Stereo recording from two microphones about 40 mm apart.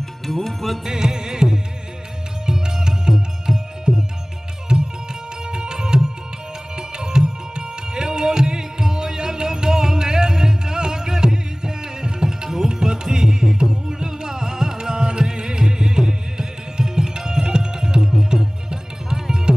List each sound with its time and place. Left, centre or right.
0.3 s music: centre
0.8 s music: centre
5.5 s music: centre